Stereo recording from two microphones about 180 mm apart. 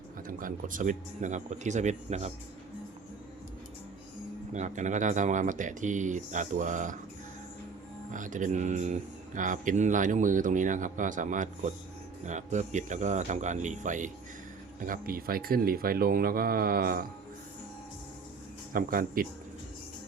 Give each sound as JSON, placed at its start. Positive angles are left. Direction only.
{"t": 0.3, "sound": "speech", "side_deg": -50}
{"t": 4.5, "sound": "speech", "side_deg": -45}
{"t": 8.1, "sound": "speech", "side_deg": -45}
{"t": 18.7, "sound": "speech", "side_deg": -50}